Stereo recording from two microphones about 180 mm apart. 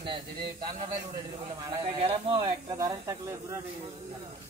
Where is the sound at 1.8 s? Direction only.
30° right (ahead or behind); by 3.6 s 15° right (ahead or behind).